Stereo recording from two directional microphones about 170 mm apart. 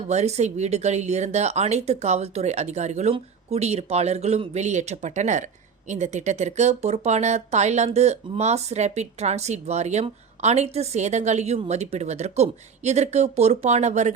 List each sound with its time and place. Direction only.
0.1 s speech: 40° right (ahead or behind)